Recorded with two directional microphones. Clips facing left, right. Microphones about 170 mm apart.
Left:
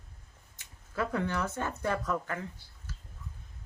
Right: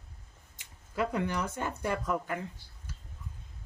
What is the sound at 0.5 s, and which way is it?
Speech, 15° right (ahead or behind).